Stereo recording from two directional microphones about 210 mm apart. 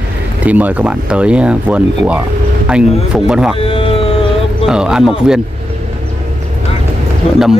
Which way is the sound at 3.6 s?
25° left (ahead or behind).